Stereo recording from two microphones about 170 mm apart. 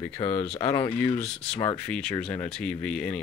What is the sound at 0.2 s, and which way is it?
Speech, 35° left (ahead or behind).